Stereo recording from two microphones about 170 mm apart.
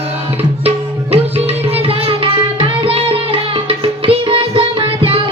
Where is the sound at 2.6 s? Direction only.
30° right (ahead or behind).